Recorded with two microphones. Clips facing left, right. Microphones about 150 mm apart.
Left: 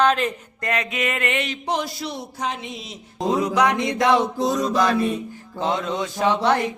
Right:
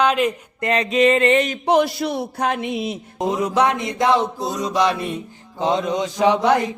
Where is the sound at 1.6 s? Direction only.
60° right (ahead or behind).